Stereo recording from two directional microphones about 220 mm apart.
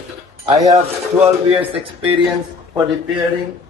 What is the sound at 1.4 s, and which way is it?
Speech, 25° right (ahead or behind).